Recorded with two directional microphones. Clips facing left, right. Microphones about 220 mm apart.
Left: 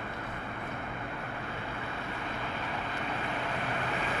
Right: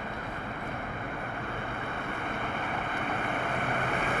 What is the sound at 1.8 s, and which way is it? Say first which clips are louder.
Boat: right 3 dB; 55° right (ahead or behind).